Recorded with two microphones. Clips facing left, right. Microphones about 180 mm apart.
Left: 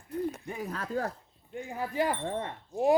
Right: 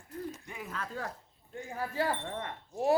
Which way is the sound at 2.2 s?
25° left (ahead or behind).